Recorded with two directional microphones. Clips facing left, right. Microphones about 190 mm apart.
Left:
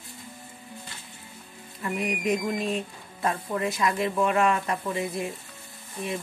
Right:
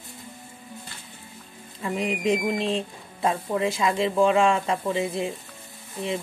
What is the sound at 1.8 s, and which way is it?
Speech, 25° right (ahead or behind).